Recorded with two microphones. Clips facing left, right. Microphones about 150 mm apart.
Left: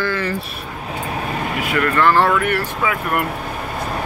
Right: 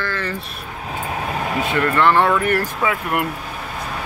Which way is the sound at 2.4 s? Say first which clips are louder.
Even; 35° right (ahead or behind).